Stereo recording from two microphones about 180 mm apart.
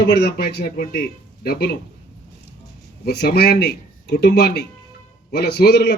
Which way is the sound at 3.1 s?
60° left (ahead or behind).